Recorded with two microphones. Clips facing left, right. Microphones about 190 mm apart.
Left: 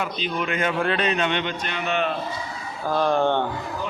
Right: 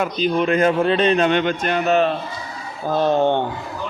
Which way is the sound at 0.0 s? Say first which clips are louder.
Right 8 dB; 40° right (ahead or behind).